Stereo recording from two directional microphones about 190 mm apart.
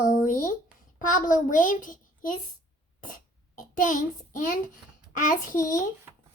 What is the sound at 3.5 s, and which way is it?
A child's voice, 45° left (ahead or behind).